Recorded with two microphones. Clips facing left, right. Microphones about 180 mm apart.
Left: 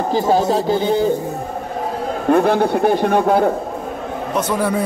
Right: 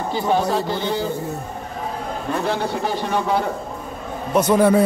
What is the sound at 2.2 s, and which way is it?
A man's voice, 55° left (ahead or behind).